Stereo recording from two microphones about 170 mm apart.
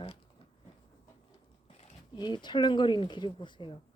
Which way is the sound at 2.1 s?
25° left (ahead or behind).